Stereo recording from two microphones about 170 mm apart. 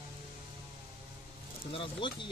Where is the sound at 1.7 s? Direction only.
30° left (ahead or behind).